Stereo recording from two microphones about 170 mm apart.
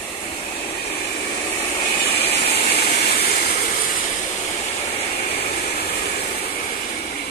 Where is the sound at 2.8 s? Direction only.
70° left (ahead or behind).